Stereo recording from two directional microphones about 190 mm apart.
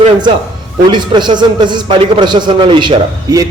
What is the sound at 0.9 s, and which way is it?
A man's voice, 25° right (ahead or behind).